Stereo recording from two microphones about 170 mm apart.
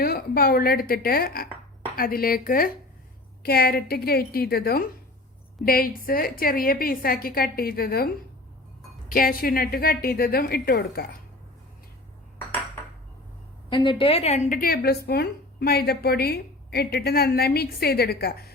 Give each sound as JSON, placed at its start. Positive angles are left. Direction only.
{"t": 0.0, "sound": "a woman's voice", "side_deg": 65}
{"t": 13.7, "sound": "a woman's voice", "side_deg": 25}
{"t": 14.5, "sound": "a woman's voice", "side_deg": 60}